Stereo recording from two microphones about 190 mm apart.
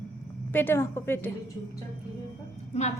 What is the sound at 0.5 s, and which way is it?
Speech, 10° left (ahead or behind).